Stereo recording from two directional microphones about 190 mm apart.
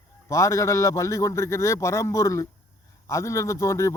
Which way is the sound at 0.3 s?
15° left (ahead or behind).